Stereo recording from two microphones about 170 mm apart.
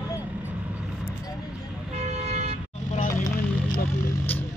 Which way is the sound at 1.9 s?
40° right (ahead or behind).